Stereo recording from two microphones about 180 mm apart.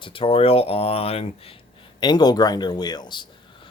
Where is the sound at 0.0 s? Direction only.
30° left (ahead or behind).